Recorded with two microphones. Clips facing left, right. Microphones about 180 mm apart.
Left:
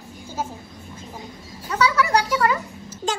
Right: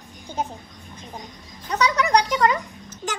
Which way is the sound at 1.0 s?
5° left (ahead or behind).